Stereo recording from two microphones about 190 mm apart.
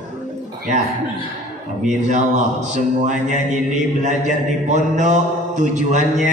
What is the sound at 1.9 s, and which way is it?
A man's voice, 40° right (ahead or behind).